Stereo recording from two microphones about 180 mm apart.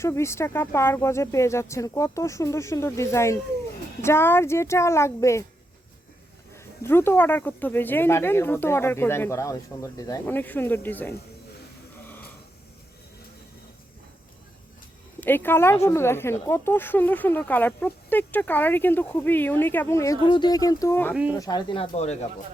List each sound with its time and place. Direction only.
0.0 s speech: 15° left (ahead or behind)
6.8 s speech: 15° left (ahead or behind)
15.2 s speech: 10° left (ahead or behind)
21.1 s speech: 5° right (ahead or behind)
21.3 s speech: 20° left (ahead or behind); by 22.3 s 40° left (ahead or behind)